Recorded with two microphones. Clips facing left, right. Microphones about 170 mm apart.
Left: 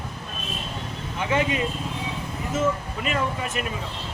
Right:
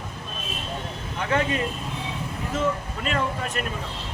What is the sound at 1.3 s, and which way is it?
Speech, 5° left (ahead or behind).